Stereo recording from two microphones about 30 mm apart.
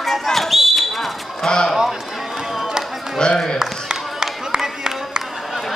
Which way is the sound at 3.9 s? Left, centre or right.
Right.